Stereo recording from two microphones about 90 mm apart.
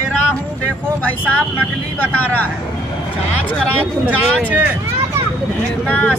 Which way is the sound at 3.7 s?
15° right (ahead or behind).